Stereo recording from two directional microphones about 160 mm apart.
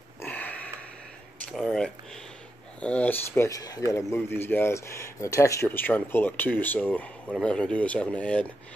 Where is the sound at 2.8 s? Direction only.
10° left (ahead or behind).